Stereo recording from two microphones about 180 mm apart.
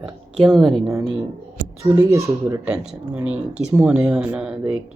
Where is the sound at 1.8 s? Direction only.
15° right (ahead or behind).